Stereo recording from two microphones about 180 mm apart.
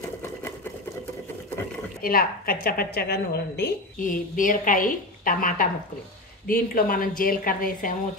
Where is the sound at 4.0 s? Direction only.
45° left (ahead or behind).